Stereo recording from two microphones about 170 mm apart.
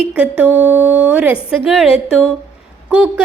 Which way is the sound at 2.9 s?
5° right (ahead or behind).